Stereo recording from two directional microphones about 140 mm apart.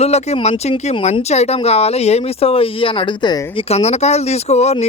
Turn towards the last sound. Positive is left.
turn(degrees=50)  # may be behind; listen again after turning